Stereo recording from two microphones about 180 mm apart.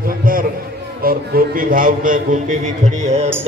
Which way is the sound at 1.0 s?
55° right (ahead or behind).